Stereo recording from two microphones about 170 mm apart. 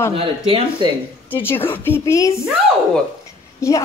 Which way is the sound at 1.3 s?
10° left (ahead or behind).